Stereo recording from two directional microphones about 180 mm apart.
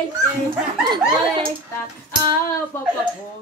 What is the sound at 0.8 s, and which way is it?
Speech, 25° right (ahead or behind).